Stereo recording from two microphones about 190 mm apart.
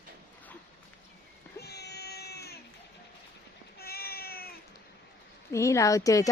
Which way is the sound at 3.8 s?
55° left (ahead or behind).